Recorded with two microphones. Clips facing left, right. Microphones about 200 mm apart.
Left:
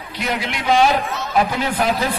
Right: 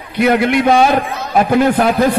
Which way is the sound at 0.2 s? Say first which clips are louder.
Right 13 dB; 55° right (ahead or behind).